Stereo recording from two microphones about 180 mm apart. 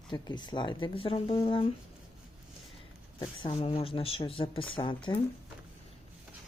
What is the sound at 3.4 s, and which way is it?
Speech, 35° left (ahead or behind).